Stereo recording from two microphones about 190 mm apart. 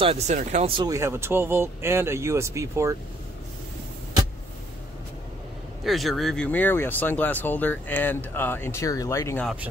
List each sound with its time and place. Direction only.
0.0 s speech: 30° right (ahead or behind)
0.9 s speech: 15° right (ahead or behind)
5.9 s speech: centre (ahead or behind)